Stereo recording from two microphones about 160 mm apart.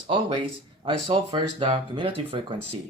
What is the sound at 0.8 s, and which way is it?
Speech, 35° right (ahead or behind).